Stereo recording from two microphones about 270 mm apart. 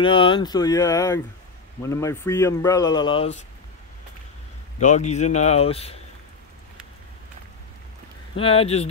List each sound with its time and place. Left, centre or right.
0.0 s speech: centre
4.7 s speech: left
8.4 s speech: left